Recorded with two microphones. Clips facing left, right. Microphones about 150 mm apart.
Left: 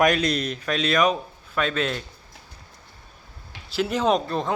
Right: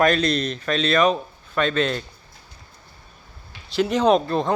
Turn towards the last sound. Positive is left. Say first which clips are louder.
# right 4 dB
turn(degrees=0)  # may be behind; listen again after turning